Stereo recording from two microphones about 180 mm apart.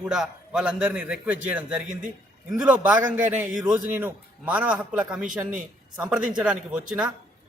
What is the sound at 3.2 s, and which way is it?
Speech, 45° right (ahead or behind).